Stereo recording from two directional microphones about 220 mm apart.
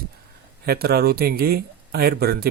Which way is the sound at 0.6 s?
45° right (ahead or behind).